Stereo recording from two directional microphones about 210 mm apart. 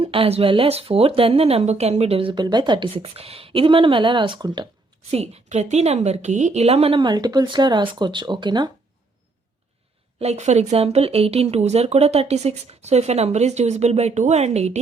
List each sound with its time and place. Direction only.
0.0 s speech: 25° right (ahead or behind)
5.1 s speech: 30° right (ahead or behind)
10.2 s speech: 30° right (ahead or behind)